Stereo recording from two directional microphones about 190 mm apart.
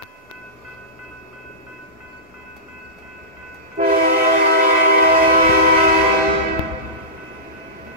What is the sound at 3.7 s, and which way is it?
Train, 50° right (ahead or behind).